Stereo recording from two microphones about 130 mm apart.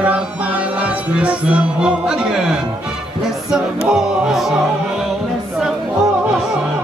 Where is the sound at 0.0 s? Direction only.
10° right (ahead or behind).